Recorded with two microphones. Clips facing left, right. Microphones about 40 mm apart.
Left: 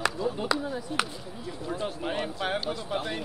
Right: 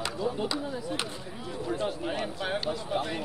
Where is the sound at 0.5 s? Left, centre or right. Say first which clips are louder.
Left 4 dB; left.